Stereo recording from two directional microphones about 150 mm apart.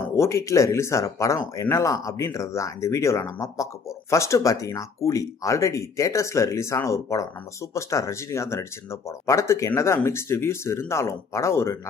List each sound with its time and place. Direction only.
0.0 s speech: 20° left (ahead or behind)